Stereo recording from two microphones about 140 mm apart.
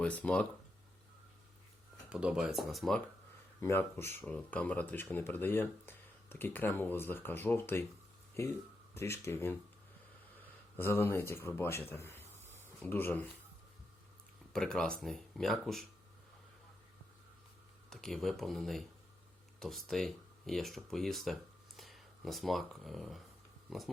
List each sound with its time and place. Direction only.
0.0 s speech: 10° left (ahead or behind)
2.0 s speech: 5° right (ahead or behind)
3.6 s speech: 20° left (ahead or behind)
9.0 s speech: 20° left (ahead or behind)
11.9 s a sound: 15° left (ahead or behind)
14.5 s speech: 5° left (ahead or behind)
17.8 s speech: 5° left (ahead or behind)